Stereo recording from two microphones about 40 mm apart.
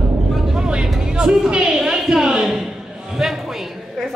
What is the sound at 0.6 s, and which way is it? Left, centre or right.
Vehicle, right.